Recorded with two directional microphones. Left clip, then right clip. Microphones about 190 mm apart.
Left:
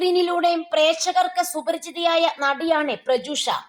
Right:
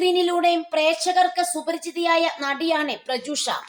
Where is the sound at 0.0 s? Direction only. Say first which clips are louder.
Even; 20° left (ahead or behind).